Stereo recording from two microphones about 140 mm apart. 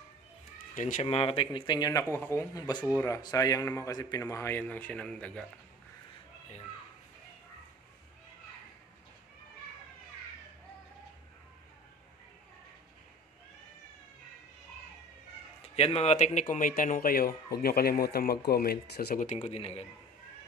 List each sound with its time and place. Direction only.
0.7 s speech: 65° left (ahead or behind)
1.0 s a man's voice: 40° left (ahead or behind); by 5.4 s 10° left (ahead or behind)
15.6 s speech: 45° left (ahead or behind)